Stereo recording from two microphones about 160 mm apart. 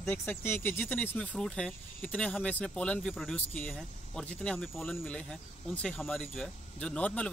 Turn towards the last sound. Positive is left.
turn(degrees=10)  # may be behind; listen again after turning